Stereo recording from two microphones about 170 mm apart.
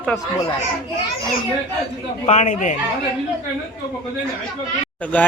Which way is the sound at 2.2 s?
45° left (ahead or behind).